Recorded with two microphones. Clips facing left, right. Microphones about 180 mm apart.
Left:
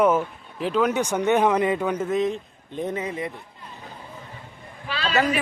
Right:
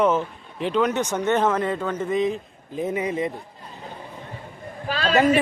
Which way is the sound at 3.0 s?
20° right (ahead or behind).